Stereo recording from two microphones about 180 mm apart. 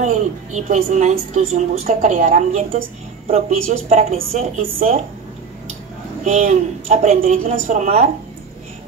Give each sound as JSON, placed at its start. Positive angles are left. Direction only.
{"t": 0.0, "sound": "a woman's voice", "side_deg": -40}
{"t": 6.2, "sound": "a woman's voice", "side_deg": -40}